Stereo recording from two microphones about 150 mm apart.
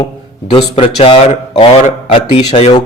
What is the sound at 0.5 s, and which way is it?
A man's voice, 40° left (ahead or behind).